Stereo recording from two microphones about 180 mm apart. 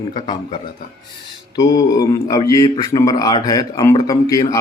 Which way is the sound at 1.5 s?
20° left (ahead or behind).